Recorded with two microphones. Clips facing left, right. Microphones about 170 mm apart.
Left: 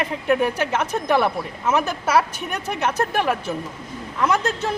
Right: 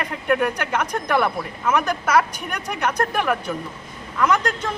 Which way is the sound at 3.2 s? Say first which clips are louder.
Left 1 dB; 25° left (ahead or behind).